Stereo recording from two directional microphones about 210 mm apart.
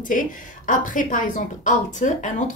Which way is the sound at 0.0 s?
40° left (ahead or behind).